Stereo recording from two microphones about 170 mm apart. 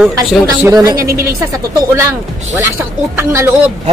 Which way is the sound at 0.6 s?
20° right (ahead or behind).